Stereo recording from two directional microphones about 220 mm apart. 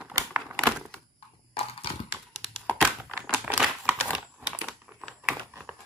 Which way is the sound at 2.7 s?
Centre (ahead or behind).